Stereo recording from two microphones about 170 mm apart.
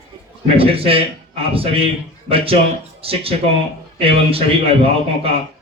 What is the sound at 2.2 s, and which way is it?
A man's voice, 35° right (ahead or behind).